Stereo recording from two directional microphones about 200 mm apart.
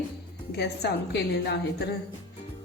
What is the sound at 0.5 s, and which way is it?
A woman's voice, 55° left (ahead or behind).